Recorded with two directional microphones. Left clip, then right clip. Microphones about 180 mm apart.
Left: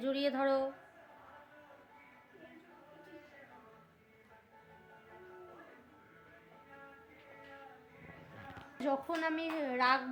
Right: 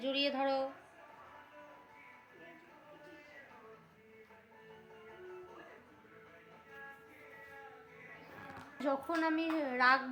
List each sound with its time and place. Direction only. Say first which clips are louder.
0.0 s speech: left 1 dB; 25° left (ahead or behind)
8.8 s a woman's voice: even; 10° left (ahead or behind)